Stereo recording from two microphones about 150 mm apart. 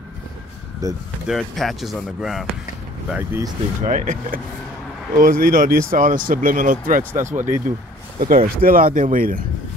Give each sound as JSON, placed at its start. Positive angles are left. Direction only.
{"t": 0.8, "sound": "speech", "side_deg": -25}
{"t": 1.2, "sound": "speech", "side_deg": 0}
{"t": 3.1, "sound": "speech", "side_deg": -15}
{"t": 3.8, "sound": "speech", "side_deg": -60}
{"t": 8.2, "sound": "speech", "side_deg": -70}